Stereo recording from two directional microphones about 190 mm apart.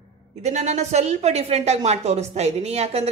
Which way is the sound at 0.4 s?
35° right (ahead or behind).